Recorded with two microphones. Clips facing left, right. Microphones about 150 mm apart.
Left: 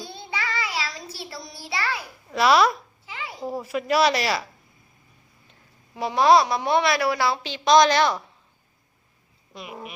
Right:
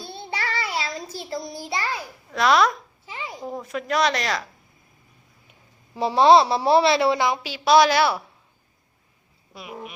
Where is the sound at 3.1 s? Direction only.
20° right (ahead or behind).